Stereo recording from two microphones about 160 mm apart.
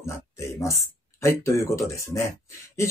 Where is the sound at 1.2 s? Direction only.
15° left (ahead or behind).